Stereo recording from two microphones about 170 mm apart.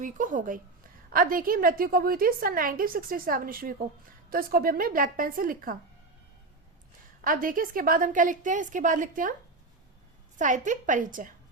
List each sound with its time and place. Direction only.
0.0 s a woman's voice: 50° right (ahead or behind)
7.2 s a woman's voice: 55° right (ahead or behind)
10.3 s a woman's voice: 45° right (ahead or behind)